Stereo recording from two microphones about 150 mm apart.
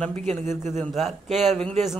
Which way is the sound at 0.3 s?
50° right (ahead or behind).